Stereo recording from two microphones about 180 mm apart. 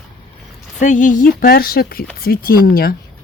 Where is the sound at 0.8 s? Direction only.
45° left (ahead or behind).